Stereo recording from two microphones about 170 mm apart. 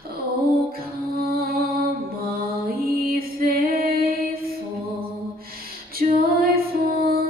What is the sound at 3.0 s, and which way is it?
Music, 60° right (ahead or behind).